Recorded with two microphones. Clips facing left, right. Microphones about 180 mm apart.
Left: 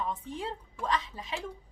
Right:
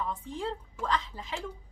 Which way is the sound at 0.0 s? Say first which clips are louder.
Right 1 dB; 20° left (ahead or behind).